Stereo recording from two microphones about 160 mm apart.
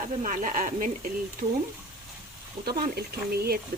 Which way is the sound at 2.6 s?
75° right (ahead or behind).